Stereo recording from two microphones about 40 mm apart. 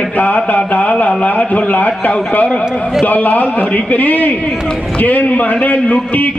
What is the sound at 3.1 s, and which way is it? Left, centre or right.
A man's voice, left.